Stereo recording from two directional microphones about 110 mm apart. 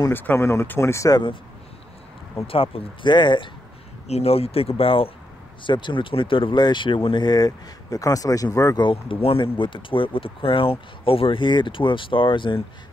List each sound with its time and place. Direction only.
0.1 s speech: 20° left (ahead or behind)
2.4 s speech: 60° left (ahead or behind)
4.1 s speech: 65° left (ahead or behind)
5.6 s speech: 45° left (ahead or behind)
8.8 s speech: 55° left (ahead or behind)